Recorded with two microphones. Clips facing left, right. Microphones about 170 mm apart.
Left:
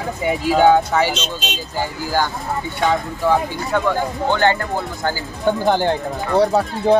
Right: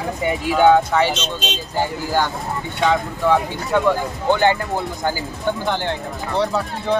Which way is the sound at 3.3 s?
Centre (ahead or behind).